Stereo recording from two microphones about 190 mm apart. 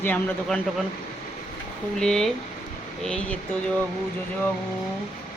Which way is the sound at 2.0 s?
5° left (ahead or behind).